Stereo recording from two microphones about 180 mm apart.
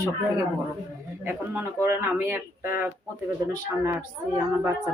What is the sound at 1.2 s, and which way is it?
A man's voice, 10° right (ahead or behind).